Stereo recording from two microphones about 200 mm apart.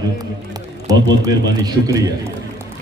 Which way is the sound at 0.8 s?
20° right (ahead or behind).